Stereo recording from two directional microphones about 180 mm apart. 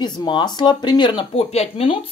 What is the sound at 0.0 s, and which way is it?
Speech, 25° left (ahead or behind).